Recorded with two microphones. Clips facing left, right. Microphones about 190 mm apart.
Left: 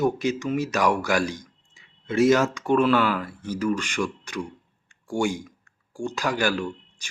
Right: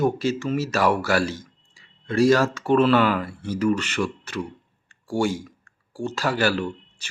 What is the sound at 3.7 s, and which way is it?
Speech, 10° left (ahead or behind).